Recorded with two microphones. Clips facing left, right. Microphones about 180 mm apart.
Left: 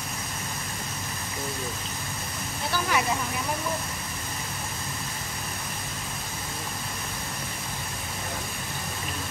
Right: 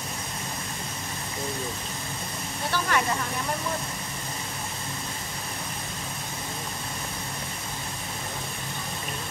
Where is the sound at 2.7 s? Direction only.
5° left (ahead or behind).